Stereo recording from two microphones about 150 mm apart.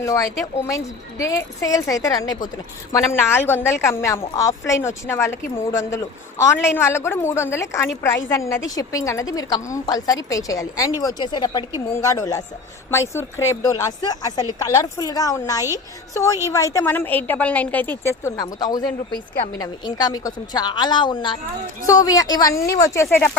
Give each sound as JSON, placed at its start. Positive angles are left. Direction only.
{"t": 0.0, "sound": "a woman's voice", "side_deg": 20}